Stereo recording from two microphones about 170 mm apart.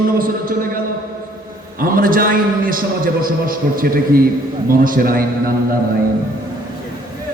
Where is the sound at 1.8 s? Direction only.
55° right (ahead or behind).